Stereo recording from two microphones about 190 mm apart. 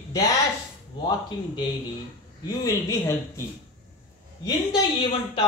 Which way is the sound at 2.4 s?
20° left (ahead or behind).